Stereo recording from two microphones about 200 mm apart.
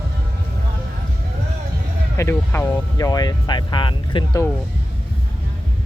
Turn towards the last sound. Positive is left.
turn(degrees=25)  # may be behind; listen again after turning